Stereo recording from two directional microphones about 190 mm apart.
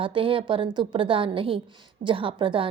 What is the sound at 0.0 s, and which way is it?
A woman's voice, 30° right (ahead or behind).